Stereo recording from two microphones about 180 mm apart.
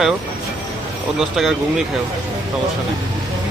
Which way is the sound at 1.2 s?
Centre (ahead or behind).